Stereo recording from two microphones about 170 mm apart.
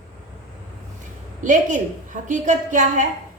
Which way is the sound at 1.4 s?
45° right (ahead or behind).